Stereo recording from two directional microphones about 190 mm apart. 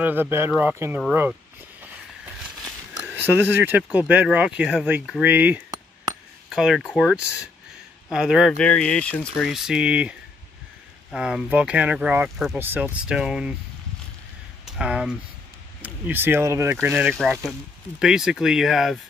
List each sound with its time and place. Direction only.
0.0 s speech: 10° right (ahead or behind)
3.2 s speech: 10° right (ahead or behind)
14.8 s speech: 5° right (ahead or behind)